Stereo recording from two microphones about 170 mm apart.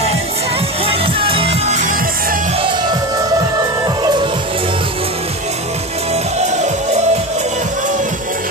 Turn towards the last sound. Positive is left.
turn(degrees=-40)  # may be behind; listen again after turning